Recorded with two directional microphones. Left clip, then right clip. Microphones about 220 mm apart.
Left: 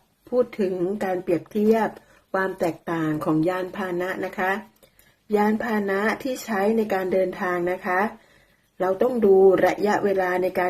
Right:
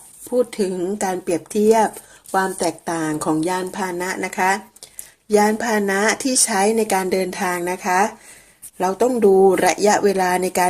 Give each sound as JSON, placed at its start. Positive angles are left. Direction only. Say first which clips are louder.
{"t": 0.5, "sound": "speech", "louder": "right 2 dB", "side_deg": -35}
{"t": 2.3, "sound": "speech", "louder": "right 4 dB", "side_deg": -35}